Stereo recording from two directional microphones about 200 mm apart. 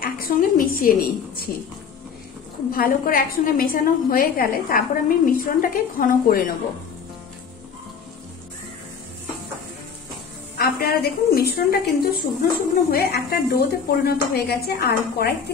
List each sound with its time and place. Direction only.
0.0 s a woman's voice: 45° left (ahead or behind)
2.7 s a woman's voice: 45° left (ahead or behind)
10.6 s a woman's voice: 50° left (ahead or behind)